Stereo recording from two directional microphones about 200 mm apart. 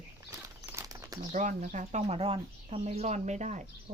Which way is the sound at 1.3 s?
40° right (ahead or behind).